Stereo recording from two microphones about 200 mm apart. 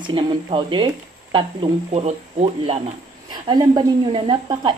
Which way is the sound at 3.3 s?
20° right (ahead or behind).